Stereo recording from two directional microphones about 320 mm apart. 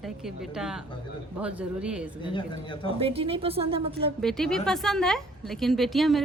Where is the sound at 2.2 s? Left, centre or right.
Centre.